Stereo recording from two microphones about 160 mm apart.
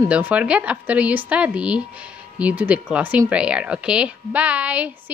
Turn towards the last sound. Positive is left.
turn(degrees=-10)  # may be behind; listen again after turning